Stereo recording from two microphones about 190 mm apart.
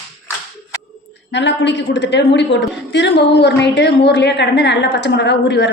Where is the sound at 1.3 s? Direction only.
70° left (ahead or behind).